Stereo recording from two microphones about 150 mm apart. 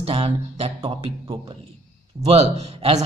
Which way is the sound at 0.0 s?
40° right (ahead or behind).